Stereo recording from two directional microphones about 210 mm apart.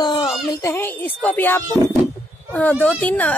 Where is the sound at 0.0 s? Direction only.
20° left (ahead or behind).